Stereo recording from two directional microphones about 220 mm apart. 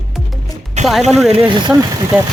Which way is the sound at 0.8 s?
30° right (ahead or behind).